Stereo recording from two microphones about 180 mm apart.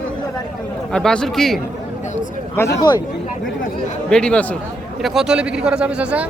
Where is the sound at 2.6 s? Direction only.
15° left (ahead or behind).